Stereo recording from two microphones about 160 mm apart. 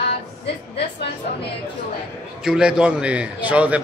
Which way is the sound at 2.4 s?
5° right (ahead or behind).